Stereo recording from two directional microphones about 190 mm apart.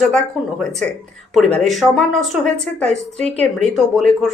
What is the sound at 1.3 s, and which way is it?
Speech, centre (ahead or behind).